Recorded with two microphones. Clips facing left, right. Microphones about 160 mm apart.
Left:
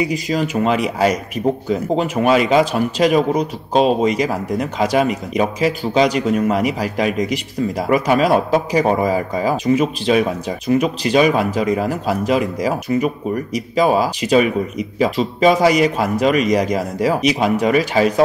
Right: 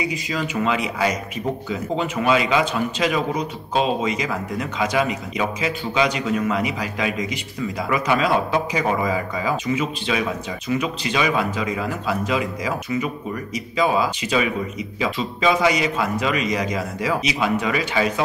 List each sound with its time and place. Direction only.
0.1 s a man's voice: 40° left (ahead or behind)